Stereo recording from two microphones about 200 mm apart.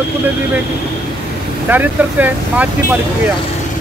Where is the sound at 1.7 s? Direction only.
10° right (ahead or behind).